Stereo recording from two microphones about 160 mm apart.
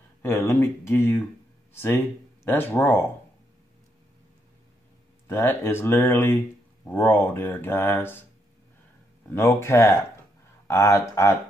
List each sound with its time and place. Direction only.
0.2 s speech: 15° left (ahead or behind)
5.3 s speech: 15° left (ahead or behind)
9.3 s speech: 15° left (ahead or behind)